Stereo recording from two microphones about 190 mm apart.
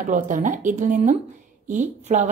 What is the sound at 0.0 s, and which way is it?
A woman's voice, 40° right (ahead or behind).